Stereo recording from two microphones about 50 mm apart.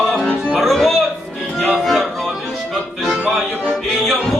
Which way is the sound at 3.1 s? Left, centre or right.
Right.